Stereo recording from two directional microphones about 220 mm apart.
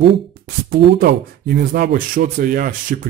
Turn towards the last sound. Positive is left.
turn(degrees=-40)  # may be behind; listen again after turning